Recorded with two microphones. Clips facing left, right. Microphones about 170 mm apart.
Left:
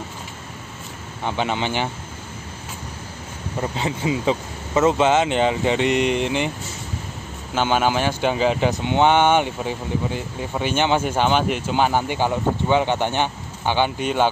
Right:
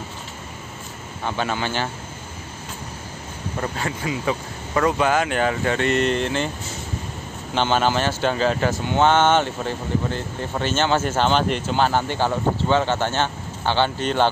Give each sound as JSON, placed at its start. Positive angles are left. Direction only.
{"t": 1.2, "sound": "speech", "side_deg": 20}
{"t": 3.6, "sound": "speech", "side_deg": 20}
{"t": 7.5, "sound": "speech", "side_deg": 10}